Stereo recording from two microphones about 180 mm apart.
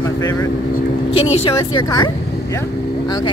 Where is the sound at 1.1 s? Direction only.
35° left (ahead or behind).